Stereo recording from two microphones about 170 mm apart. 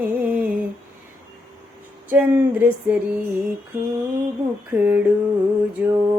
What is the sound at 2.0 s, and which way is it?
Music, 10° right (ahead or behind).